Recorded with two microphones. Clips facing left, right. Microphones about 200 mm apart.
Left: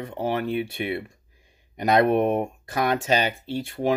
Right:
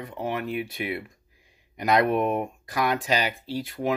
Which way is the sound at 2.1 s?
50° left (ahead or behind).